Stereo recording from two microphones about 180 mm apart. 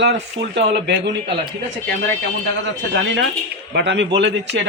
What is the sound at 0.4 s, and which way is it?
Speech, 30° right (ahead or behind).